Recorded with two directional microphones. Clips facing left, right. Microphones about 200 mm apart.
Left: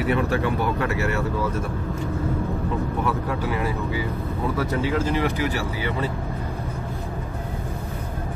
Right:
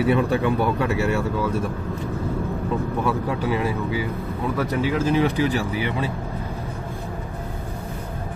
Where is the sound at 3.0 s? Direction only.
20° right (ahead or behind).